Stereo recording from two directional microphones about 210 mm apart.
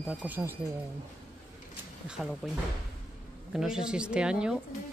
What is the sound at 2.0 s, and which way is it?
Speech, 5° right (ahead or behind).